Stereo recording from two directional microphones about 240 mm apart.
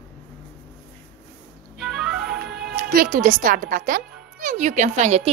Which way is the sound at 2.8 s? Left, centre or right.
Right.